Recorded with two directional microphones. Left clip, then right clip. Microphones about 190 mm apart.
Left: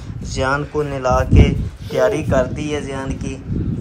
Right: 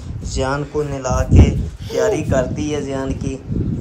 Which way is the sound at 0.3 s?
15° right (ahead or behind).